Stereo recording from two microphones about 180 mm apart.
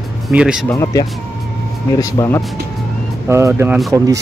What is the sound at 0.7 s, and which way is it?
Speech, 15° left (ahead or behind).